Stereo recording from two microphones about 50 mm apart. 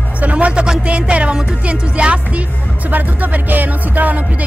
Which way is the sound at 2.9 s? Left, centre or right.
Right.